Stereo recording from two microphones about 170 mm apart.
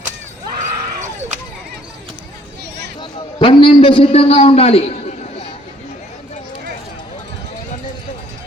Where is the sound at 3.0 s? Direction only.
30° left (ahead or behind).